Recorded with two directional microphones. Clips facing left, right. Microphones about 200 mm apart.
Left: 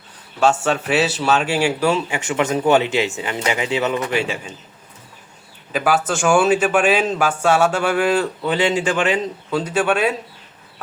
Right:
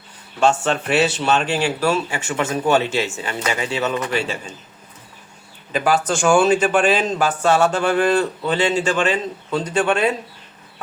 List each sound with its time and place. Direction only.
0.3 s speech: 5° left (ahead or behind)
5.7 s speech: 5° left (ahead or behind)